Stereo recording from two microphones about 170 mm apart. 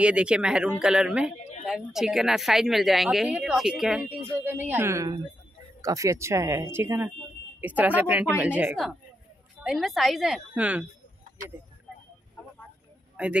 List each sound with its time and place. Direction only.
0.0 s speech: 5° right (ahead or behind)
13.2 s a man's voice: 5° right (ahead or behind)